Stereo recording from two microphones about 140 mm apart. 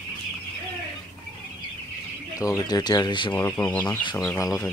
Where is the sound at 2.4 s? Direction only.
25° left (ahead or behind).